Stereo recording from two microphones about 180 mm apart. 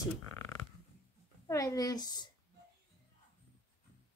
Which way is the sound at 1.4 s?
20° left (ahead or behind).